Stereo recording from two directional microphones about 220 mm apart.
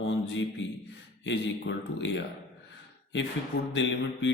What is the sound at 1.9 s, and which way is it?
Speech, 55° left (ahead or behind).